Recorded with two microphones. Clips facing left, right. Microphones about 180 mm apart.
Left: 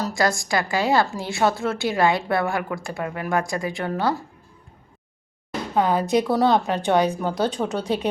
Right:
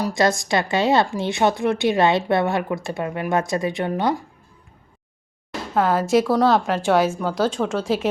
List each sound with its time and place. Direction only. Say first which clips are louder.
0.0 s a woman's voice: right 3 dB; 20° right (ahead or behind)
5.7 s a woman's voice: right 2 dB; centre (ahead or behind)